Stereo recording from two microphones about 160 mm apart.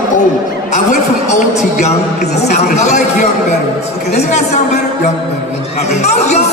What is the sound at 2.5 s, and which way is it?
Speech, 45° left (ahead or behind).